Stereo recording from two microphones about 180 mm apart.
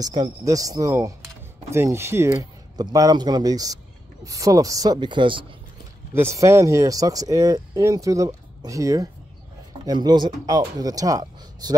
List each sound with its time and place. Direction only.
0.0 s a man's voice: 20° right (ahead or behind)
6.1 s a man's voice: 15° right (ahead or behind)